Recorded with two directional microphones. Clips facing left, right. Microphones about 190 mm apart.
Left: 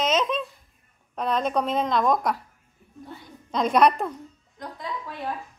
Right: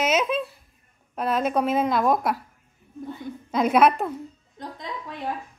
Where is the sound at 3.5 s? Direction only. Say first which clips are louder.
Right 1 dB; 5° right (ahead or behind).